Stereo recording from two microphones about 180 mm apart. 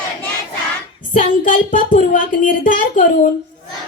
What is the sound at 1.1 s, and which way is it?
Speech, 50° left (ahead or behind).